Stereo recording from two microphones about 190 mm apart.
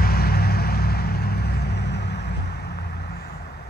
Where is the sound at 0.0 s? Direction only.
55° left (ahead or behind).